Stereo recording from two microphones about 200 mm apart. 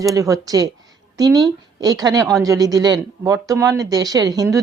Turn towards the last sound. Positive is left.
turn(degrees=-15)  # may be behind; listen again after turning